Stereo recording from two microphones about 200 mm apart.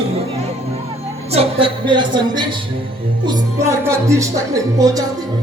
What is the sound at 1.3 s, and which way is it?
A woman's voice, 30° right (ahead or behind).